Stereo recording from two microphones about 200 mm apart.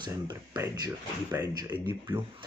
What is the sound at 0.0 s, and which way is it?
Speech, 20° right (ahead or behind).